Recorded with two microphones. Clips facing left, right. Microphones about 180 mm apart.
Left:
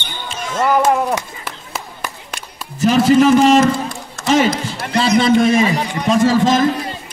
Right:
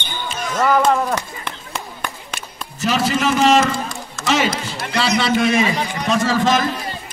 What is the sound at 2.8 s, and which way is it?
A man's voice, 50° left (ahead or behind).